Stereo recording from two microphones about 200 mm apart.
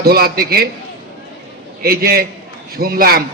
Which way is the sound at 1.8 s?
50° right (ahead or behind).